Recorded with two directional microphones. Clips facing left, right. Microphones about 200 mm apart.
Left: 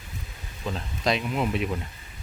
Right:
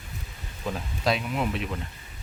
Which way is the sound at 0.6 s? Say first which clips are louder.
Even; 5° right (ahead or behind).